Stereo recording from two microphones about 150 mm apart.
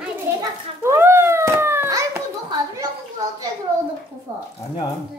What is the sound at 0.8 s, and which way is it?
Cat, 15° right (ahead or behind).